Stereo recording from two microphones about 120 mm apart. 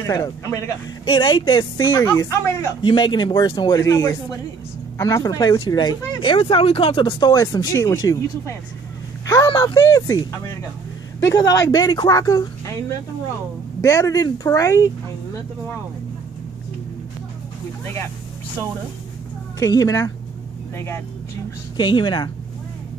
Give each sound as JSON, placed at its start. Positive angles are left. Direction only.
{"t": 0.0, "sound": "speech", "side_deg": 25}
{"t": 1.0, "sound": "speech", "side_deg": 40}
{"t": 1.9, "sound": "speech", "side_deg": 25}
{"t": 2.8, "sound": "speech", "side_deg": 40}
{"t": 9.2, "sound": "a sound", "side_deg": 30}
{"t": 9.8, "sound": "speech", "side_deg": 25}
{"t": 13.7, "sound": "speech", "side_deg": 25}
{"t": 17.8, "sound": "speech", "side_deg": 20}
{"t": 19.6, "sound": "speech", "side_deg": 30}
{"t": 21.7, "sound": "speech", "side_deg": 40}